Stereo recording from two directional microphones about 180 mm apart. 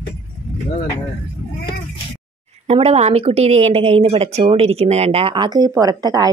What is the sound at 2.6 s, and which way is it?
A woman's voice, 35° right (ahead or behind).